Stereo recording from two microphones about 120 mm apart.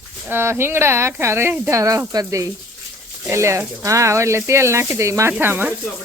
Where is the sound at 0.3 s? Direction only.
20° right (ahead or behind).